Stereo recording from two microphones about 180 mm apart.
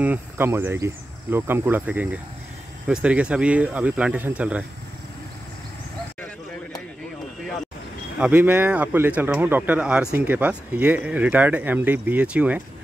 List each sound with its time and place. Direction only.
0.0 s speech: 10° right (ahead or behind)
8.2 s speech: 10° right (ahead or behind)